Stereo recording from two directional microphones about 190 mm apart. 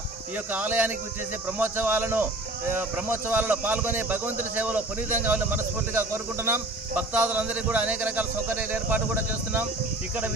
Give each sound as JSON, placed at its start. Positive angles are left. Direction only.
{"t": 0.5, "sound": "speech", "side_deg": -10}